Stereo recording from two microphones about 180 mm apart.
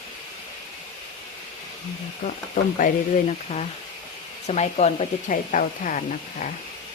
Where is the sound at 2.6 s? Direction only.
50° left (ahead or behind).